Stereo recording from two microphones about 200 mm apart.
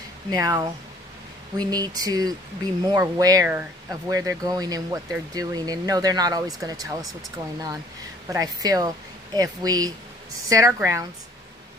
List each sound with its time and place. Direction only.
0.3 s speech: 15° right (ahead or behind)
8.3 s speech: 15° right (ahead or behind)